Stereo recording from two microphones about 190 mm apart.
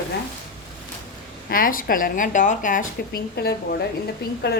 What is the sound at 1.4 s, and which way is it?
A woman's voice, 50° left (ahead or behind).